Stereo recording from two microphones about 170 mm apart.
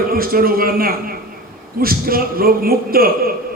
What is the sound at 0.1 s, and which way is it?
A man's voice, 60° right (ahead or behind).